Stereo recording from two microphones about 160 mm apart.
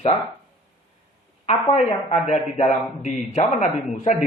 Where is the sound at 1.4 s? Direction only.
40° left (ahead or behind).